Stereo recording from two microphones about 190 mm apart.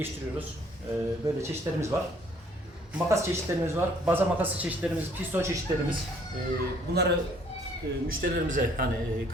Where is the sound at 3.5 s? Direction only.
15° right (ahead or behind).